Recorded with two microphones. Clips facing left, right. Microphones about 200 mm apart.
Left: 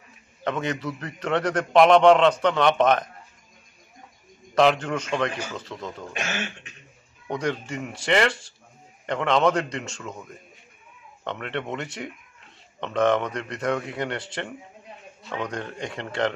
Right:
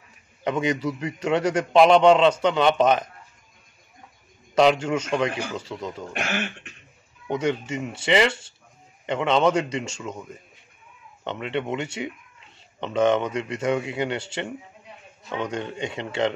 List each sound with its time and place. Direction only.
0.4 s a man's voice: 10° right (ahead or behind)
4.6 s a man's voice: 10° right (ahead or behind)
6.1 s speech: 60° right (ahead or behind)
7.3 s a man's voice: 5° right (ahead or behind)
11.2 s a man's voice: 5° right (ahead or behind)